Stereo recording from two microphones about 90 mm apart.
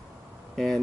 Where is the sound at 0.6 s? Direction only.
5° left (ahead or behind).